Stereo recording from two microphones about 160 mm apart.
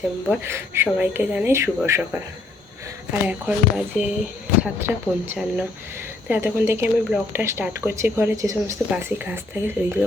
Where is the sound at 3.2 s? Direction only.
10° right (ahead or behind).